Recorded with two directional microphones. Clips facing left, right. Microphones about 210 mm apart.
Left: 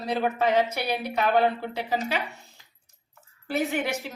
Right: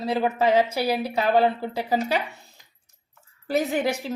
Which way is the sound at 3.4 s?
40° right (ahead or behind).